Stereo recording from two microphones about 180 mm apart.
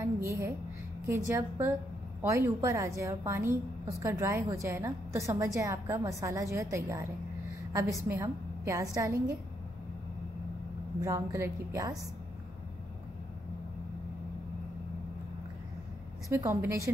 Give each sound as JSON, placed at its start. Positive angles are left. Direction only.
{"t": 0.0, "sound": "a sound", "side_deg": -15}
{"t": 1.0, "sound": "a woman's voice", "side_deg": -15}
{"t": 8.1, "sound": "a woman's voice", "side_deg": -15}
{"t": 11.0, "sound": "a woman's voice", "side_deg": -15}
{"t": 16.3, "sound": "a woman's voice", "side_deg": -15}